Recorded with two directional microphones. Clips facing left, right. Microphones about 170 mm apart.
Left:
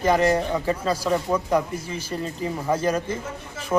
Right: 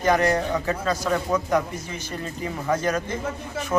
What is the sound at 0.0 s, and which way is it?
Speech, 30° left (ahead or behind).